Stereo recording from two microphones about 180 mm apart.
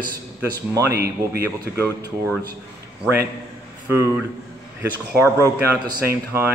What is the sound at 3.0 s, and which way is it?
Speech, 10° right (ahead or behind).